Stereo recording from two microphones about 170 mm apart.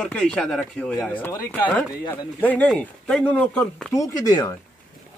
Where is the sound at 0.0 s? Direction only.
5° left (ahead or behind).